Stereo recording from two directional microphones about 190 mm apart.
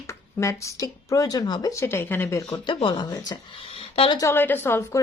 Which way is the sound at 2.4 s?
30° left (ahead or behind).